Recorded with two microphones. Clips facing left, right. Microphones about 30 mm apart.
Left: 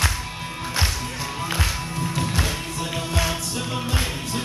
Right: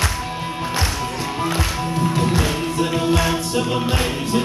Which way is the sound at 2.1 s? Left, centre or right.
Centre.